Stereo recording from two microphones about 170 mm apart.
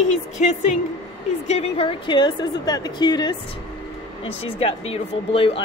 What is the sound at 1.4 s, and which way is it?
A woman's voice, 40° left (ahead or behind).